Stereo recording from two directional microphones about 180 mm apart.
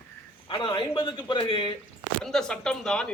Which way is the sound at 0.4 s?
30° left (ahead or behind).